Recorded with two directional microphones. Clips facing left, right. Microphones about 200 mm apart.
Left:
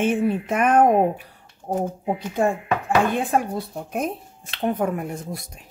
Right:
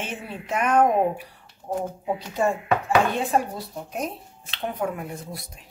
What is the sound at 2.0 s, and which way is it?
A woman's voice, 50° left (ahead or behind).